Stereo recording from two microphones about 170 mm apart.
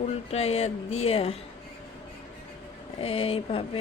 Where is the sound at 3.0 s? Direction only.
35° left (ahead or behind).